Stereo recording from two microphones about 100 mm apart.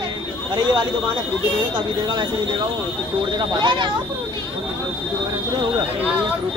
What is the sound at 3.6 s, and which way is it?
Speech, 50° right (ahead or behind).